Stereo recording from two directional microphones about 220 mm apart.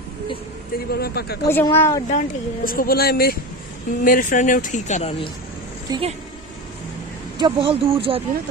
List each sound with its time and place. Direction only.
0.9 s speech: 45° left (ahead or behind)
1.5 s speech: 10° left (ahead or behind)
2.0 s speech: 35° left (ahead or behind)
5.9 s a woman's voice: 25° right (ahead or behind)
7.3 s speech: 20° right (ahead or behind)